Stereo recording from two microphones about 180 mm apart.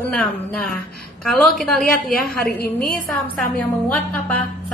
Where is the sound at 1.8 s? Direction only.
55° left (ahead or behind).